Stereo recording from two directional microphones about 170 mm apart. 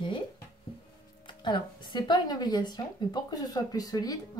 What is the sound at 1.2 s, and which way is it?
Speech, 25° left (ahead or behind).